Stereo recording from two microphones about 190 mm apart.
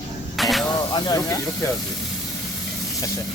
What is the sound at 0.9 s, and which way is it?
Speech, 20° left (ahead or behind).